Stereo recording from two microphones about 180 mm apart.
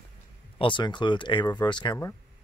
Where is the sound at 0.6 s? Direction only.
25° left (ahead or behind).